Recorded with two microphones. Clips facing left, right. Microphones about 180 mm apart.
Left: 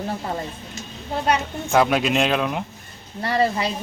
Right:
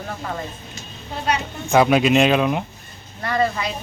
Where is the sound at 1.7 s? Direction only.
5° right (ahead or behind).